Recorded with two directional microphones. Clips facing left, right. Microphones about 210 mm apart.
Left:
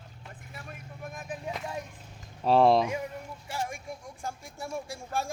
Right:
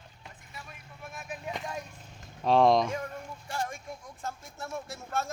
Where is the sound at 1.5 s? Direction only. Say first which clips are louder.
Even; centre (ahead or behind).